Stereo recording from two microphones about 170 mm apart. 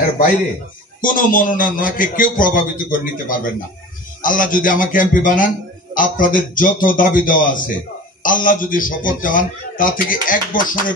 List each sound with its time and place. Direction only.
1.0 s a man's voice: 55° left (ahead or behind)